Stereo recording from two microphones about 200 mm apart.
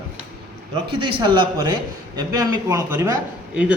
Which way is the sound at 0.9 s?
25° right (ahead or behind).